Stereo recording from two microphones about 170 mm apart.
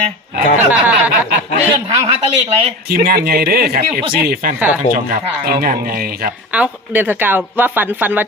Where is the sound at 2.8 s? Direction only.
60° right (ahead or behind).